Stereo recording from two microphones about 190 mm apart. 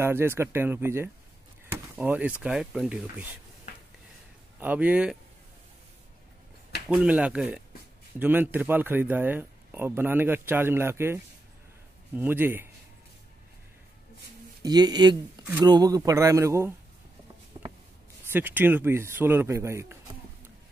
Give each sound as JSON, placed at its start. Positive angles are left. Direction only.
{"t": 0.0, "sound": "a man's voice", "side_deg": -10}
{"t": 4.6, "sound": "a man's voice", "side_deg": -10}
{"t": 6.9, "sound": "a man's voice", "side_deg": -5}
{"t": 12.2, "sound": "a man's voice", "side_deg": -10}
{"t": 14.6, "sound": "a man's voice", "side_deg": -20}
{"t": 17.5, "sound": "a sound", "side_deg": -25}
{"t": 18.3, "sound": "a man's voice", "side_deg": -10}